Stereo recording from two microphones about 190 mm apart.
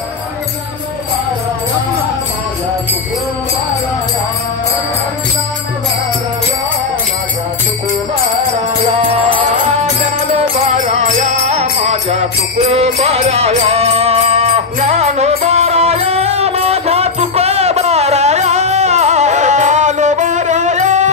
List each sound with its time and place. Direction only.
9.1 s music: 30° right (ahead or behind)
11.0 s music: 35° right (ahead or behind)